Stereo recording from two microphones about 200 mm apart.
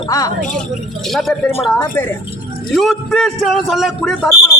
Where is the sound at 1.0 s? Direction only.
Centre (ahead or behind).